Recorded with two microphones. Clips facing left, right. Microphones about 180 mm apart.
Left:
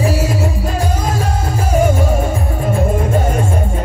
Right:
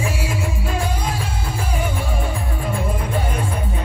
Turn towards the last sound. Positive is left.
turn(degrees=45)  # may be behind; listen again after turning